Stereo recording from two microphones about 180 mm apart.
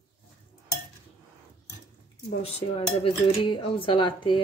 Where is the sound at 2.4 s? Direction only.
30° left (ahead or behind).